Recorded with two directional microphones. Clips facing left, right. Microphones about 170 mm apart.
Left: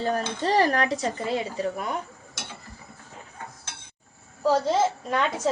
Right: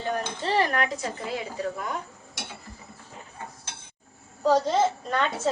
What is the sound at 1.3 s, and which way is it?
Speech, 20° left (ahead or behind).